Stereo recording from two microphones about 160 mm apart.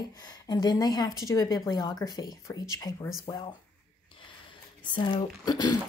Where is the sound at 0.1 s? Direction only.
25° left (ahead or behind).